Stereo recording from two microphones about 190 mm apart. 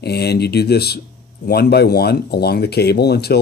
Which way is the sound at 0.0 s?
60° left (ahead or behind).